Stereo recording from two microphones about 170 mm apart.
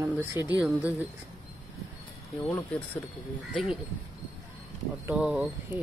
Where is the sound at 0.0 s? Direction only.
15° right (ahead or behind).